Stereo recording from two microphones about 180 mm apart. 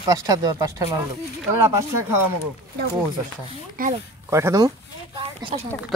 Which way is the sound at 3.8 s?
55° right (ahead or behind).